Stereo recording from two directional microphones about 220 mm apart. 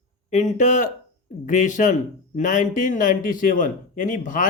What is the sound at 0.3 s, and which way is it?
Speech, 30° left (ahead or behind).